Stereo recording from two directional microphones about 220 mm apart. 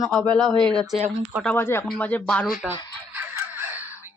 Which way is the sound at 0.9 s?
25° right (ahead or behind).